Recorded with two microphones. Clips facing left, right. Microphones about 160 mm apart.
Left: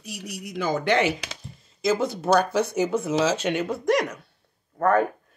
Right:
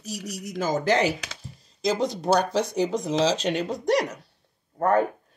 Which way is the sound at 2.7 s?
35° right (ahead or behind).